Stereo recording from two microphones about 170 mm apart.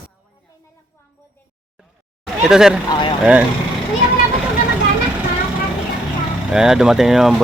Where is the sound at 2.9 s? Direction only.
25° left (ahead or behind).